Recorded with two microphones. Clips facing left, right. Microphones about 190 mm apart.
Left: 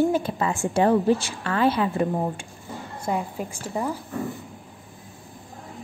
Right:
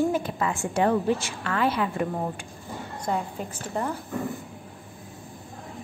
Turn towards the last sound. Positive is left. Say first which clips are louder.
# left 2 dB
turn(degrees=10)  # may be behind; listen again after turning